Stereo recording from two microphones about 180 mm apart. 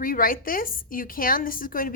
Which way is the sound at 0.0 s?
50° left (ahead or behind).